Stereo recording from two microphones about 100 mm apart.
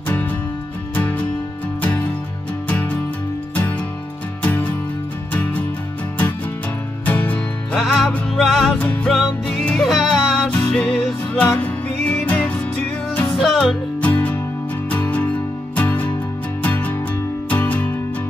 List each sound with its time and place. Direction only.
0.9 s music: 15° left (ahead or behind)
4.4 s music: 15° left (ahead or behind)
7.1 s music: 15° left (ahead or behind)
7.7 s music: centre (ahead or behind)
8.7 s music: 15° left (ahead or behind)
9.1 s music: 5° left (ahead or behind)
10.5 s music: 15° left (ahead or behind)
13.3 s music: centre (ahead or behind)
14.0 s music: 15° left (ahead or behind)